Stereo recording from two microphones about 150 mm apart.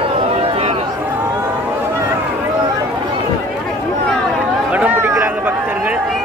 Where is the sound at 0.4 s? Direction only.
45° right (ahead or behind).